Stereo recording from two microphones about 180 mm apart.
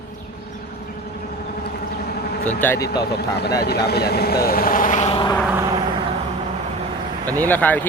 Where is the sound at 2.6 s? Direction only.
15° left (ahead or behind).